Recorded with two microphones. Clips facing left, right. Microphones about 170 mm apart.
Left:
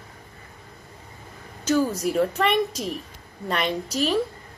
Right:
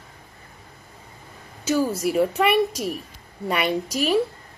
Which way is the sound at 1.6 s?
10° right (ahead or behind).